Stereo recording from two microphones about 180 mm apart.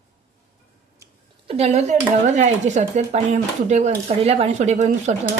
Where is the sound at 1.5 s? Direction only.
35° right (ahead or behind).